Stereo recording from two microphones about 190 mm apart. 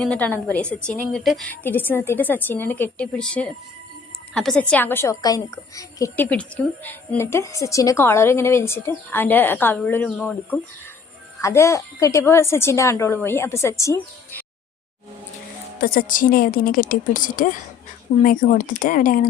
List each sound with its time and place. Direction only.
0.0 s a woman's voice: 5° left (ahead or behind)
15.8 s a woman's voice: 50° left (ahead or behind)